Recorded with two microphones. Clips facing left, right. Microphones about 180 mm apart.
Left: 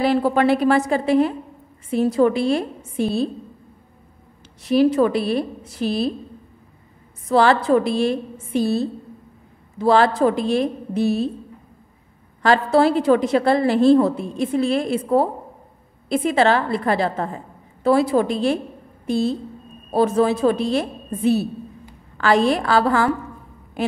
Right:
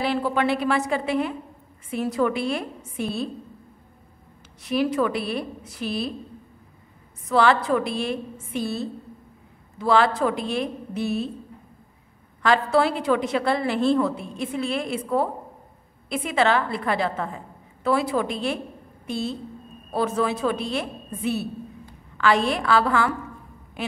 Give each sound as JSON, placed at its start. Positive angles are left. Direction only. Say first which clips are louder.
{"t": 0.0, "sound": "a woman's voice", "louder": "left 6 dB", "side_deg": 40}
{"t": 4.6, "sound": "a woman's voice", "louder": "left 7 dB", "side_deg": 35}
{"t": 7.2, "sound": "a woman's voice", "louder": "left 4 dB", "side_deg": 35}
{"t": 12.4, "sound": "a woman's voice", "louder": "left 4 dB", "side_deg": 35}